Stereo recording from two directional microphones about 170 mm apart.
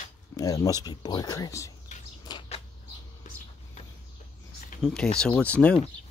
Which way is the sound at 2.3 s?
25° left (ahead or behind).